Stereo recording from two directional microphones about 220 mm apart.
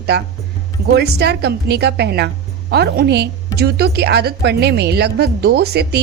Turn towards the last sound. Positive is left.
turn(degrees=-45)  # may be behind; listen again after turning